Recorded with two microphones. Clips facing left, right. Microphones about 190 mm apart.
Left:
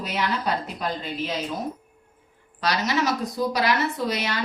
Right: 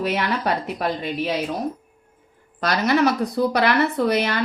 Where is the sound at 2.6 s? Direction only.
55° right (ahead or behind).